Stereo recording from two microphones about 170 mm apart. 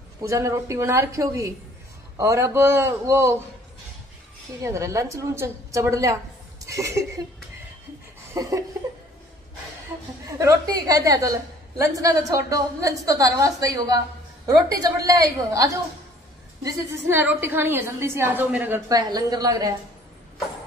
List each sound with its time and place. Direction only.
0.2 s a woman's voice: 15° right (ahead or behind)
4.6 s a woman's voice: 20° right (ahead or behind)
8.4 s a woman's voice: 20° right (ahead or behind)
10.4 s a woman's voice: 20° right (ahead or behind)
18.9 s a woman's voice: 20° right (ahead or behind)